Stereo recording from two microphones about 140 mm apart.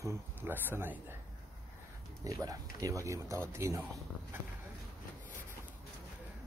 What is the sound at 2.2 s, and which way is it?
Speech, 25° right (ahead or behind).